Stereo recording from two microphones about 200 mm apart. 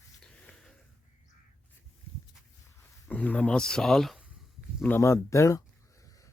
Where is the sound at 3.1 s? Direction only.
5° left (ahead or behind).